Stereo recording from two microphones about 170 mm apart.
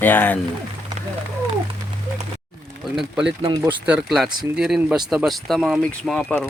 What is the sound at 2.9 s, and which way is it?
Speech, 5° right (ahead or behind).